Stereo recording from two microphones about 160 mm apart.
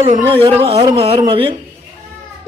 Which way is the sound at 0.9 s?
35° right (ahead or behind).